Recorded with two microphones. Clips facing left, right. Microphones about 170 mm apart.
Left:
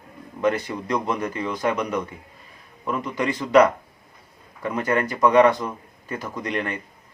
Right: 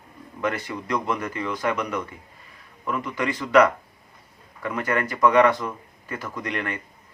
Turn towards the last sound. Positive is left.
turn(degrees=20)  # may be behind; listen again after turning